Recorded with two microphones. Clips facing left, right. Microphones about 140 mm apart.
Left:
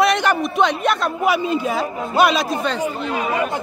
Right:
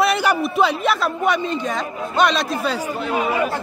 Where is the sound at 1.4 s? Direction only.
10° left (ahead or behind).